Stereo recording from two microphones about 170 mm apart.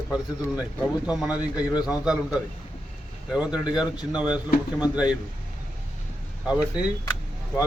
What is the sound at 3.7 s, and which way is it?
A man's voice, centre (ahead or behind).